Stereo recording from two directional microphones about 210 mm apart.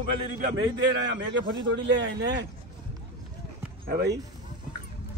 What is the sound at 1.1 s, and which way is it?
A man's voice, 55° right (ahead or behind).